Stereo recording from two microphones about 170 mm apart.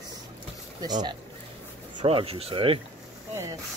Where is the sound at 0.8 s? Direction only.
25° right (ahead or behind).